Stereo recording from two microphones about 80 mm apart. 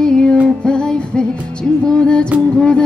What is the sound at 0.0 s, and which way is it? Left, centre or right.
Music, centre.